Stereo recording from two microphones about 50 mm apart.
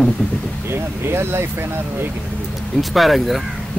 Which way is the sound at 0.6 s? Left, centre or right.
Right.